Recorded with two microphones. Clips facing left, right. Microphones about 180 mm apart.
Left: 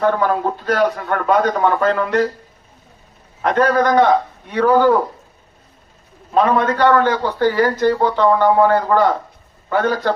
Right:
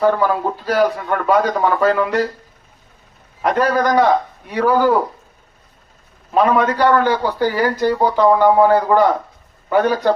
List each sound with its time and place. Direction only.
0.0 s a man's voice: 5° right (ahead or behind)
3.4 s a man's voice: 10° right (ahead or behind)
6.3 s a man's voice: 10° right (ahead or behind)